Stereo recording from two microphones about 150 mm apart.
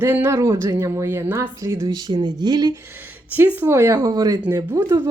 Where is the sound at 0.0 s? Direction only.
15° right (ahead or behind).